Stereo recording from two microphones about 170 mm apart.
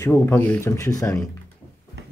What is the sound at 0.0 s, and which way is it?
Speech, 15° left (ahead or behind).